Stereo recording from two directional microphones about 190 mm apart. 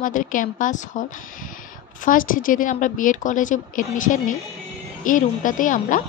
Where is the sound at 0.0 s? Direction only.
45° left (ahead or behind).